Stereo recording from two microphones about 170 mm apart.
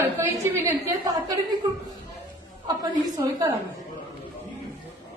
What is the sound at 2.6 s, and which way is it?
Speech, 25° right (ahead or behind).